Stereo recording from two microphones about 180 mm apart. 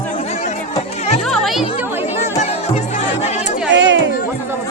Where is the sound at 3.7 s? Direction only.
80° right.